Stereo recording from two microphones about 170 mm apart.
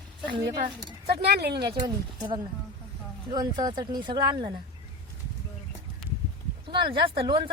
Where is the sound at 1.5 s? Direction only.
25° right (ahead or behind).